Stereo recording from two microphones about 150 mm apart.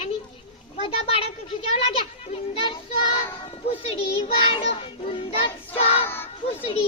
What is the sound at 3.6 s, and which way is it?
Music, 40° left (ahead or behind).